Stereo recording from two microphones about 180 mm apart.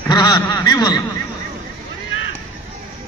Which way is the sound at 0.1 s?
20° left (ahead or behind).